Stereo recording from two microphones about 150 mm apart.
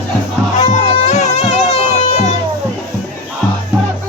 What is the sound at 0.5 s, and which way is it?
Music, 50° left (ahead or behind).